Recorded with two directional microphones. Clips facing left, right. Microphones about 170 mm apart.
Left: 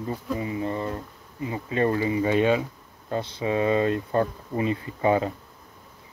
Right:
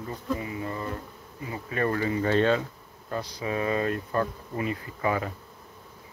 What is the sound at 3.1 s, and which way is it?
Bee, 25° left (ahead or behind).